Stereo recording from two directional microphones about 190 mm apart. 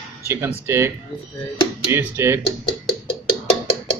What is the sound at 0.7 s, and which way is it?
Speech, 15° right (ahead or behind).